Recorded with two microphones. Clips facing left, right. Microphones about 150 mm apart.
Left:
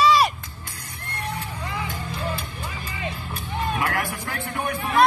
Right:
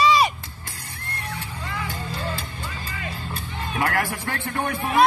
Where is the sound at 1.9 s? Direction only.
30° right (ahead or behind).